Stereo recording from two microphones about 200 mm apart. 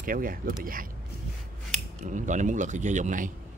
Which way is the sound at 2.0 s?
40° right (ahead or behind).